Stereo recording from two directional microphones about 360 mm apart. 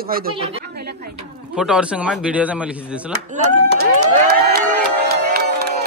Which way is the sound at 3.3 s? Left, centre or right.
Right.